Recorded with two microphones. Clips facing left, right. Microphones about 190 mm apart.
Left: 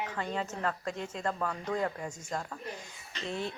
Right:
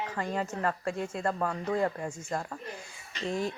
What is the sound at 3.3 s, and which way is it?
Speech, 40° right (ahead or behind).